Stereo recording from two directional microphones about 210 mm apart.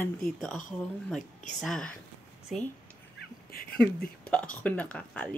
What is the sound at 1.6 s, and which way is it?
Speech, centre (ahead or behind).